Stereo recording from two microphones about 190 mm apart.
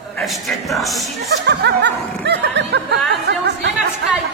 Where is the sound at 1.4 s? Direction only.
65° right (ahead or behind).